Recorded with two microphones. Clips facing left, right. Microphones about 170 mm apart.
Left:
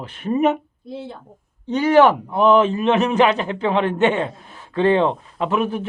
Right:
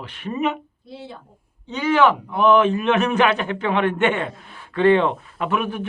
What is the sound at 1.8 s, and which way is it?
A man's voice, 35° left (ahead or behind).